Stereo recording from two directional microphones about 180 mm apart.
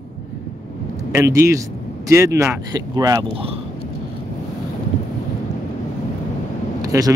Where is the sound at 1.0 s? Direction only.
15° right (ahead or behind).